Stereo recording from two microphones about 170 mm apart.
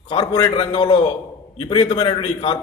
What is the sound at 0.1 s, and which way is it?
A man's voice, 25° left (ahead or behind).